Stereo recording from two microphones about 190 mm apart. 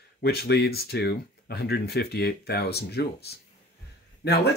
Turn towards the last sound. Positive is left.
turn(degrees=60)  # may be behind; listen again after turning